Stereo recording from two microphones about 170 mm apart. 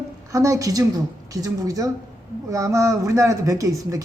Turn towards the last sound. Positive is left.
turn(degrees=-20)  # may be behind; listen again after turning